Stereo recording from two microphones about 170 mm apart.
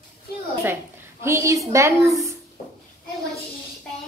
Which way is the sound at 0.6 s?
15° right (ahead or behind).